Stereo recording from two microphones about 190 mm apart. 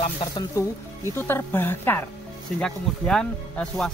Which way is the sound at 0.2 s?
20° left (ahead or behind).